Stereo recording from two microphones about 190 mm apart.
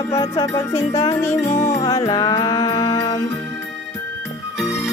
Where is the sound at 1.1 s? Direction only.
15° left (ahead or behind).